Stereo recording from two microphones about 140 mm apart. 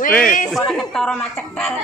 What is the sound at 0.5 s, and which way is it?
Speech, 5° left (ahead or behind).